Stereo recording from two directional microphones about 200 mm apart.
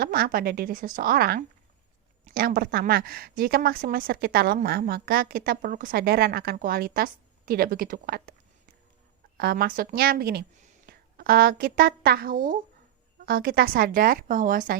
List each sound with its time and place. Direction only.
0.0 s speech: 45° right (ahead or behind)
9.4 s speech: 50° right (ahead or behind)